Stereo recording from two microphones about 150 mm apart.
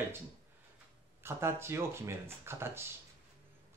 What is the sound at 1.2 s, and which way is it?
Speech, 15° right (ahead or behind).